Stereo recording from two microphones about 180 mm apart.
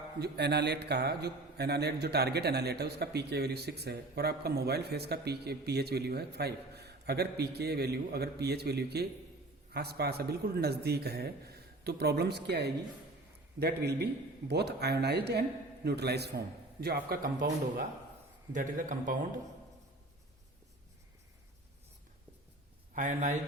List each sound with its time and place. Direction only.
0.2 s a man's voice: 65° right (ahead or behind)
18.5 s a man's voice: 45° right (ahead or behind)
23.0 s a man's voice: 45° right (ahead or behind)